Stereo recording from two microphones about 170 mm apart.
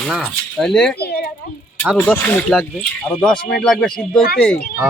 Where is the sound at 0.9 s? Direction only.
70° left (ahead or behind).